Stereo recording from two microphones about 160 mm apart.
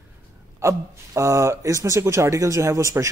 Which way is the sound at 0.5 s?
15° right (ahead or behind).